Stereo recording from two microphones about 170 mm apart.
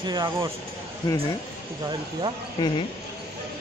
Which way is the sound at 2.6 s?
25° left (ahead or behind).